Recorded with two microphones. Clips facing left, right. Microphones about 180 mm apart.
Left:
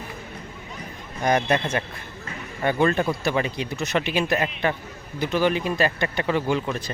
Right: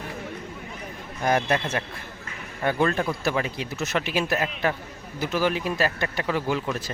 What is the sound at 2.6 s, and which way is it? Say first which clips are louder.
Speech: left 2 dB; centre (ahead or behind).